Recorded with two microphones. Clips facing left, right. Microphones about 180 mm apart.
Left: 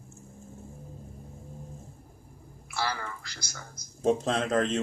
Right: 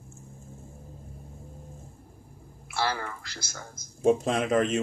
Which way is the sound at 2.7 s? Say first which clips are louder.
Right 3 dB; 50° right (ahead or behind).